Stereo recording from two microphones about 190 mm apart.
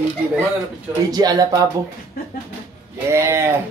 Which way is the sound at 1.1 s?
20° right (ahead or behind).